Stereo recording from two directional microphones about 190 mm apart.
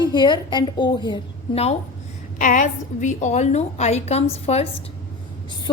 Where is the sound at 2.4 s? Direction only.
40° left (ahead or behind).